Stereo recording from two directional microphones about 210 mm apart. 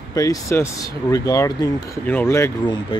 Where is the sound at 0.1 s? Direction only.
15° left (ahead or behind).